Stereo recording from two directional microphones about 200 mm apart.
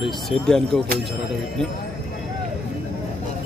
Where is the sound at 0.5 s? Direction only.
5° left (ahead or behind).